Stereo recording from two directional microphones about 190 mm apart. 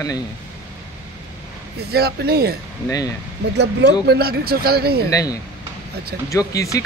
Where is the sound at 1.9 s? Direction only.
55° right (ahead or behind).